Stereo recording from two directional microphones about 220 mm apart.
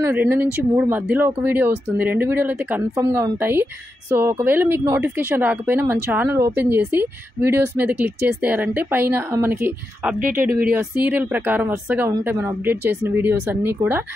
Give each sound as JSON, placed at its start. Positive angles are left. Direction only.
{"t": 0.0, "sound": "speech", "side_deg": -10}
{"t": 10.1, "sound": "speech", "side_deg": -40}
{"t": 10.7, "sound": "speech", "side_deg": -5}